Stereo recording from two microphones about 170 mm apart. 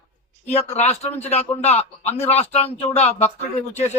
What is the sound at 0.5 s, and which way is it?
A man's voice, 40° left (ahead or behind).